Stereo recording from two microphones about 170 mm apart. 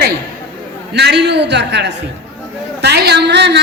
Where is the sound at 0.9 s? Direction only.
85° right.